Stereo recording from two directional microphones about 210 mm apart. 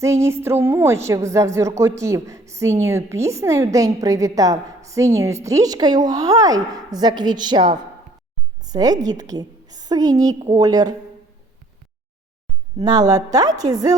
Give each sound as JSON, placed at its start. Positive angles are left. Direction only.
{"t": 0.0, "sound": "a woman's voice", "side_deg": -10}
{"t": 12.8, "sound": "a woman's voice", "side_deg": -20}